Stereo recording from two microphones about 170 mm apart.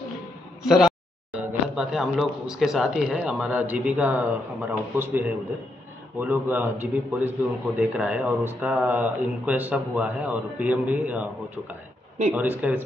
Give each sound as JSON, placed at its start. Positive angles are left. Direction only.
{"t": 0.7, "sound": "speech", "side_deg": 0}